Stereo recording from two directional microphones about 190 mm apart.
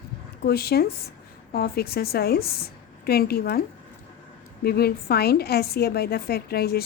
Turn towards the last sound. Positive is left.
turn(degrees=55)  # may be behind; listen again after turning